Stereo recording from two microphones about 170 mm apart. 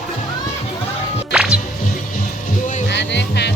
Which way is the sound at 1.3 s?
5° right (ahead or behind).